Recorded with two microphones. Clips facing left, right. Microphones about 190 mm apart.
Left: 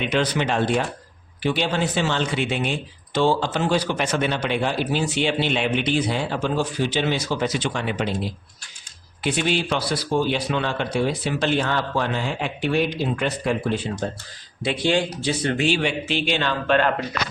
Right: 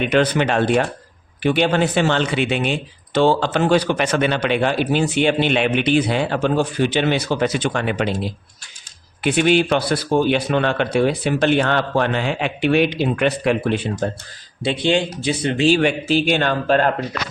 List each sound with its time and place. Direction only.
0.0 s speech: 55° right (ahead or behind); by 2.7 s 80° right
3.2 s speech: 65° right (ahead or behind)
9.2 s speech: 60° right (ahead or behind)
14.6 s speech: 25° right (ahead or behind)
15.7 s speech: 45° right (ahead or behind)